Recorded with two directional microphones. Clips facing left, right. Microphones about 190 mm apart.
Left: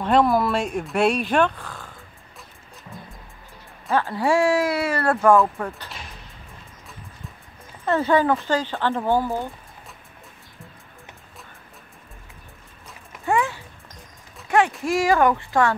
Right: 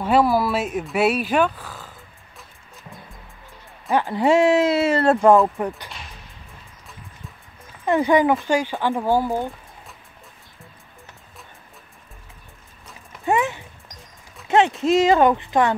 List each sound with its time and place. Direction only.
0.0 s speech: 5° right (ahead or behind)
3.9 s speech: 15° right (ahead or behind)
7.8 s speech: 15° right (ahead or behind)
13.2 s a sound: 20° right (ahead or behind)
14.5 s speech: 20° right (ahead or behind)